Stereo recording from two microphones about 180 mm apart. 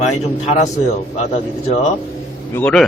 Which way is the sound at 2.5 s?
5° left (ahead or behind).